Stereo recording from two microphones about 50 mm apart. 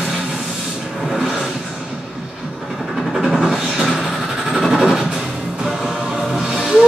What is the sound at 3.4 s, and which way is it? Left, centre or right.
Music, centre.